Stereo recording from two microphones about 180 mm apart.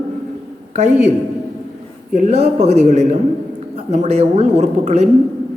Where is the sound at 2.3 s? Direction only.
40° right (ahead or behind).